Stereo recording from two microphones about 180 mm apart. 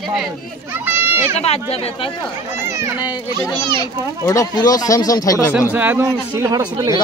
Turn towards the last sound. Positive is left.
turn(degrees=-20)  # may be behind; listen again after turning